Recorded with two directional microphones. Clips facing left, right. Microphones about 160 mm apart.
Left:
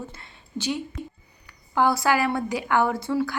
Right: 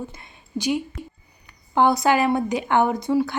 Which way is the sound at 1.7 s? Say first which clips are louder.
Right 3 dB; 20° right (ahead or behind).